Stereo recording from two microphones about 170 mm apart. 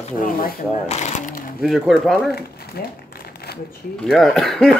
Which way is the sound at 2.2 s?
65° left (ahead or behind).